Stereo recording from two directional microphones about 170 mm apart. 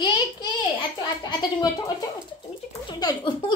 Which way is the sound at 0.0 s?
25° left (ahead or behind).